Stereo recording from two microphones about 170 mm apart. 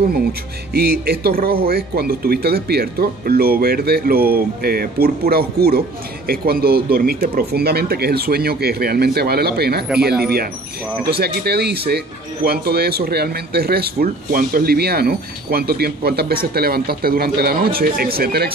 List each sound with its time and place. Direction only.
0.7 s a man's voice: 65° right (ahead or behind)